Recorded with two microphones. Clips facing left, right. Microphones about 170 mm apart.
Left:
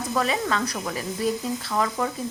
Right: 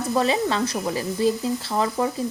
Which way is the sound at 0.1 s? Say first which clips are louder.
Right 3 dB; 25° right (ahead or behind).